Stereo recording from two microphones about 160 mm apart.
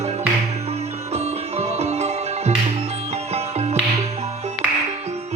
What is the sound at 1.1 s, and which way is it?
Music, 45° right (ahead or behind).